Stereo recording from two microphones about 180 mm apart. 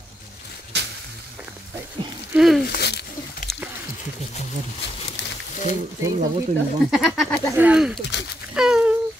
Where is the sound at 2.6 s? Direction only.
65° left (ahead or behind).